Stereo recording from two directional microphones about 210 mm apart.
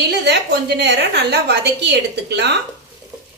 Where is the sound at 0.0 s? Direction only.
55° right (ahead or behind).